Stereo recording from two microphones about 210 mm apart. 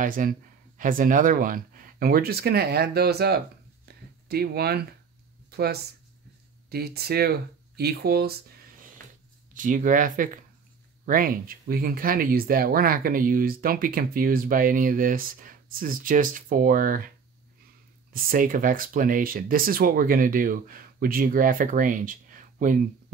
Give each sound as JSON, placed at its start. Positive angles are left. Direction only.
{"t": 0.0, "sound": "speech", "side_deg": -40}
{"t": 3.8, "sound": "a sound", "side_deg": -50}
{"t": 5.5, "sound": "speech", "side_deg": -50}
{"t": 6.7, "sound": "speech", "side_deg": -50}
{"t": 9.5, "sound": "speech", "side_deg": -40}
{"t": 18.1, "sound": "speech", "side_deg": -40}